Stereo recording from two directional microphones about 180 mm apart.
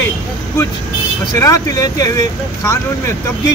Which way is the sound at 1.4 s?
20° left (ahead or behind).